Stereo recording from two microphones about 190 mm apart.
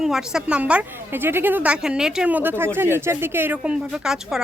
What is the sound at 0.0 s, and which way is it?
A woman's voice, 5° right (ahead or behind).